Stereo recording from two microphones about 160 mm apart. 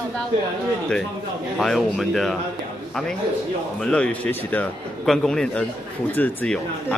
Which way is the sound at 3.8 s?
5° left (ahead or behind).